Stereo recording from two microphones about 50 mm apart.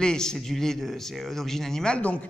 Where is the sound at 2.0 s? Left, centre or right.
Left.